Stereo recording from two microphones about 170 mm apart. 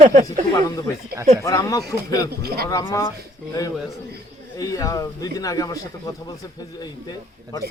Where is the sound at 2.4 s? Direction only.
65° right (ahead or behind).